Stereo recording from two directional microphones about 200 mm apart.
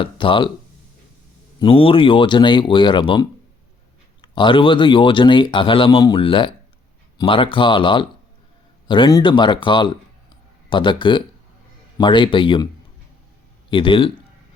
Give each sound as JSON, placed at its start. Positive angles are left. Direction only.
{"t": 0.0, "sound": "speech", "side_deg": 25}
{"t": 1.5, "sound": "speech", "side_deg": 25}
{"t": 11.9, "sound": "speech", "side_deg": 25}
{"t": 13.7, "sound": "a man's voice", "side_deg": 25}